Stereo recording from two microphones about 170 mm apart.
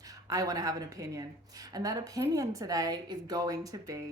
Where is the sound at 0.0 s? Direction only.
20° right (ahead or behind).